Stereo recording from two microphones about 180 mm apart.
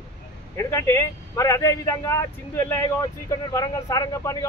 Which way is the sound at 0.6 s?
15° left (ahead or behind).